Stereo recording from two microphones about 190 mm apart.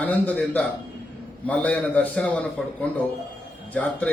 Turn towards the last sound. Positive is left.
turn(degrees=5)  # may be behind; listen again after turning